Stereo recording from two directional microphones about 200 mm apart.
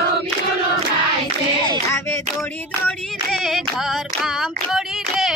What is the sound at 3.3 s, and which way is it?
Clapping, centre (ahead or behind).